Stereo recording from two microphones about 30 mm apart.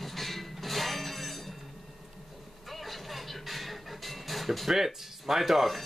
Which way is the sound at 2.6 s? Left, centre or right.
Centre.